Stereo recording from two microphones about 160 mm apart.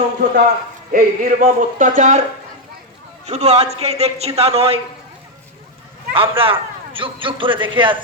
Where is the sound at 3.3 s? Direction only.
40° right (ahead or behind).